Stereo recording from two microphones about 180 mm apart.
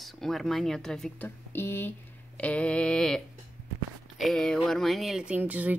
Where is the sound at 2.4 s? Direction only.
5° left (ahead or behind).